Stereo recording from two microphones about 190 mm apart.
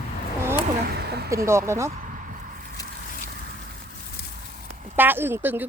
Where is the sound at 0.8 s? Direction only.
55° right (ahead or behind).